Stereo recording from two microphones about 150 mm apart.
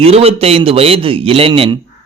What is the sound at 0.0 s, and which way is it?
A man's voice, 40° right (ahead or behind).